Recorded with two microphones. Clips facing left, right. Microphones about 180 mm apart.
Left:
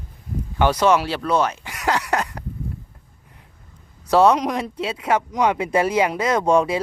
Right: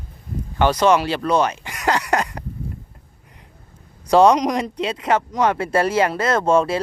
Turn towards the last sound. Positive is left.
turn(degrees=15)  # may be behind; listen again after turning